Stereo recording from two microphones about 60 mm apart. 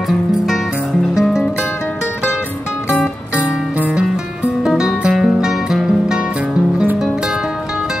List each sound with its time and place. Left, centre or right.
4.6 s music: centre